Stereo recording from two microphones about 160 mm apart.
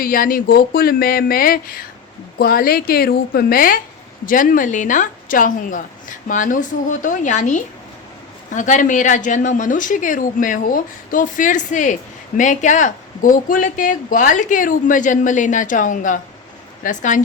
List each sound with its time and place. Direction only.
0.0 s a woman's voice: 60° left (ahead or behind)